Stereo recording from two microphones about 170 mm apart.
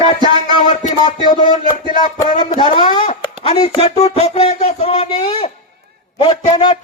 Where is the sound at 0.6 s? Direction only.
45° left (ahead or behind).